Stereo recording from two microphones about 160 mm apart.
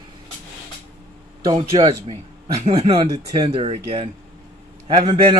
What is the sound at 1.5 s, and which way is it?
Speech, 35° right (ahead or behind).